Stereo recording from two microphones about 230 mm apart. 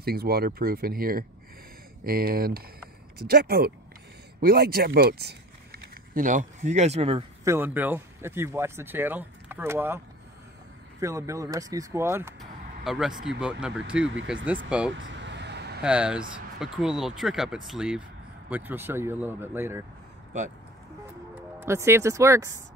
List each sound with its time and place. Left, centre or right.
0.0 s speech: right
7.4 s speech: centre
12.4 s a sound: centre
13.4 s speech: centre
15.0 s vehicle: right
15.8 s speech: centre
21.4 s speech: centre